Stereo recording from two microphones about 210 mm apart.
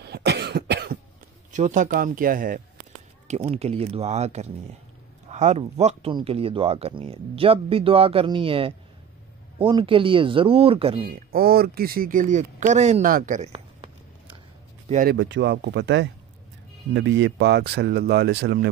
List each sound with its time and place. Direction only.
0.0 s cough: 50° right (ahead or behind)
1.5 s speech: 35° right (ahead or behind)
3.3 s speech: 30° right (ahead or behind)
11.1 s speech: 45° right (ahead or behind); by 13.8 s 30° right (ahead or behind)
15.0 s speech: 55° right (ahead or behind)